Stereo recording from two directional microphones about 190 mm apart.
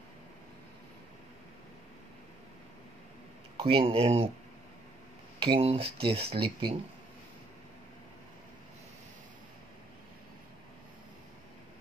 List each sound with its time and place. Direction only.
3.5 s speech: 30° right (ahead or behind)
5.4 s speech: 30° right (ahead or behind)